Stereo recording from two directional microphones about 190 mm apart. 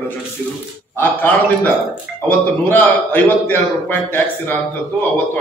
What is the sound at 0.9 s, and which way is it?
A man's voice, 10° left (ahead or behind).